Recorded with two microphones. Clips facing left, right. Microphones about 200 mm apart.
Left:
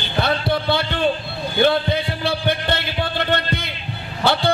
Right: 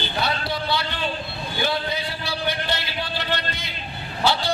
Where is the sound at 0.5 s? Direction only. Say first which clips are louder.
Left 6 dB; 55° left (ahead or behind).